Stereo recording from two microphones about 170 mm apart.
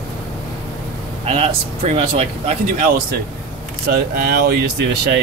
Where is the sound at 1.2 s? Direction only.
35° right (ahead or behind).